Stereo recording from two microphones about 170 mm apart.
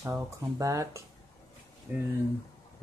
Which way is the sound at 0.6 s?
20° right (ahead or behind).